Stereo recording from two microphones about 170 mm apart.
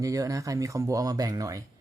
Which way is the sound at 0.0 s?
20° right (ahead or behind).